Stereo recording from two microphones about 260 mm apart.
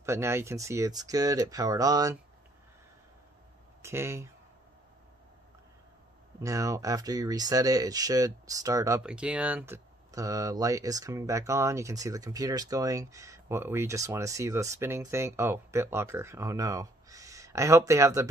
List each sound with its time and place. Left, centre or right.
0.0 s speech: centre
3.8 s speech: centre
6.4 s speech: centre